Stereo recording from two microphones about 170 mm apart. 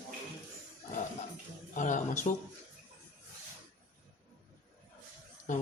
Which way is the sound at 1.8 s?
45° left (ahead or behind).